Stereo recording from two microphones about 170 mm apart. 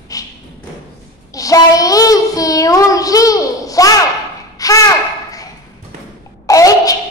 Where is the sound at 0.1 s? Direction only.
20° left (ahead or behind).